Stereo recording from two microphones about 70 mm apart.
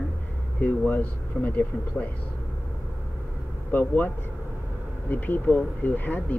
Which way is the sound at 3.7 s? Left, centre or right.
Left.